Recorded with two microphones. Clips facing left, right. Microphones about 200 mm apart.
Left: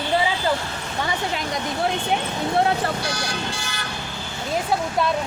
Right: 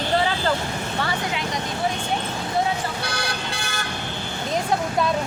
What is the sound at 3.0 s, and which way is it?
Speech, 60° right (ahead or behind).